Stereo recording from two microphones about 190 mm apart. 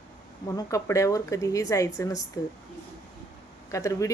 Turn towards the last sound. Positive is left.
turn(degrees=15)  # may be behind; listen again after turning